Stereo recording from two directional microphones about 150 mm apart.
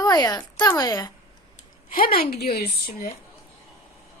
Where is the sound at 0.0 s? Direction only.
25° left (ahead or behind).